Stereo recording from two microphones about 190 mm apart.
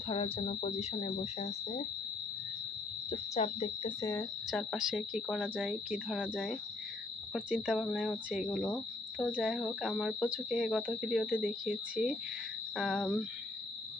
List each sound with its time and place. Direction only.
0.1 s speech: 30° left (ahead or behind)
3.1 s speech: 35° left (ahead or behind)
4.0 s speech: 10° left (ahead or behind)
4.5 s speech: centre (ahead or behind)